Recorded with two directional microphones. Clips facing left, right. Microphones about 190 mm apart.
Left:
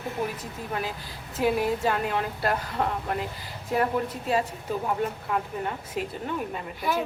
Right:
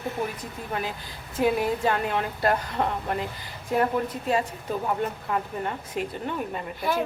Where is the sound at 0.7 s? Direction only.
Centre (ahead or behind).